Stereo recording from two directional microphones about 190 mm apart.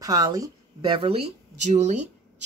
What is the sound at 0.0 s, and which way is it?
A woman's voice, 20° right (ahead or behind).